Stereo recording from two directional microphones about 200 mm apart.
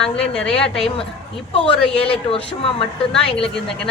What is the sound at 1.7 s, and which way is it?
Speech, 5° left (ahead or behind).